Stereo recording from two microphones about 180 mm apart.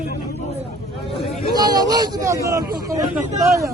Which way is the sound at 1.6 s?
20° right (ahead or behind).